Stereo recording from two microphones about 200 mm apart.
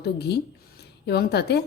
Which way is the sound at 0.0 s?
55° left (ahead or behind).